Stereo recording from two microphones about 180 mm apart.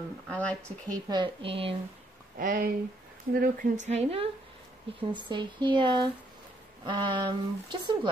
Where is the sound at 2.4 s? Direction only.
55° right (ahead or behind).